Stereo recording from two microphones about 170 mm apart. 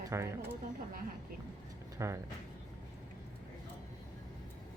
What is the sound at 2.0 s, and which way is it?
Speech, 15° right (ahead or behind).